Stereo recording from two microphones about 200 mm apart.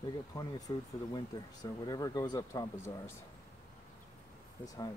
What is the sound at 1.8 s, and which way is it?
Speech, 20° left (ahead or behind).